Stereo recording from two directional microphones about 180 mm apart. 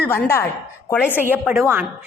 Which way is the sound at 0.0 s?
15° left (ahead or behind).